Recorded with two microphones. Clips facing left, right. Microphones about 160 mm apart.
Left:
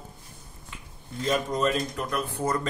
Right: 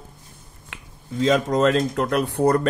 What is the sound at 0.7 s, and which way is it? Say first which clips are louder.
Speech: right 8 dB; 90° right.